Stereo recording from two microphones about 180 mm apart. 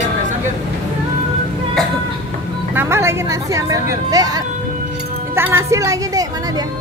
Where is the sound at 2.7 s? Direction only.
15° right (ahead or behind).